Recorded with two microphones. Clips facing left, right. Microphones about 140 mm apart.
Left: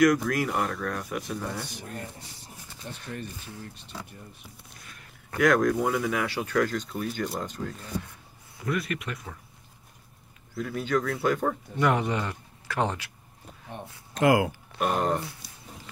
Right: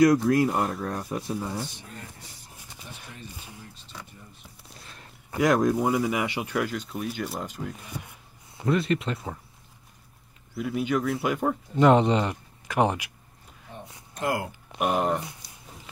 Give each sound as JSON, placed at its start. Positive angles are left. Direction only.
{"t": 0.0, "sound": "speech", "side_deg": -25}
{"t": 2.9, "sound": "speech", "side_deg": 60}
{"t": 5.3, "sound": "speech", "side_deg": -20}
{"t": 8.5, "sound": "speech", "side_deg": -25}
{"t": 10.5, "sound": "speech", "side_deg": -5}
{"t": 11.8, "sound": "speech", "side_deg": -25}
{"t": 14.1, "sound": "speech", "side_deg": 90}
{"t": 14.7, "sound": "speech", "side_deg": -10}